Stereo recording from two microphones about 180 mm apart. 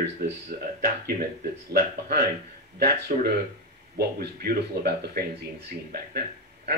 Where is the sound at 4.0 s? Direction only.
60° right (ahead or behind).